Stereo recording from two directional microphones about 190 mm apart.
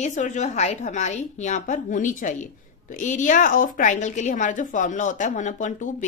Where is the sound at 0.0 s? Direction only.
40° left (ahead or behind).